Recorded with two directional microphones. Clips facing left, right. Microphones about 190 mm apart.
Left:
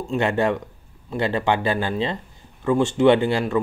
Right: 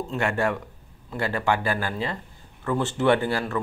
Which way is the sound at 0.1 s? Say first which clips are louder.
Left 6 dB; 20° left (ahead or behind).